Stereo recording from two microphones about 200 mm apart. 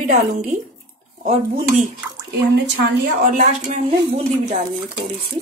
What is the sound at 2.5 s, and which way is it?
A woman's voice, 55° right (ahead or behind).